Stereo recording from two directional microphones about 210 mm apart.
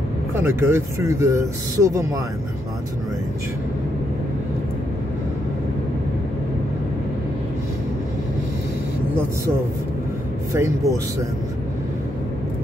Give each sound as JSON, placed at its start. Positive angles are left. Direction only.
{"t": 0.4, "sound": "speech", "side_deg": -10}
{"t": 10.5, "sound": "speech", "side_deg": -15}